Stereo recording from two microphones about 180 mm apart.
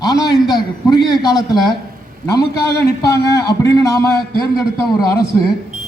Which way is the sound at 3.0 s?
20° left (ahead or behind).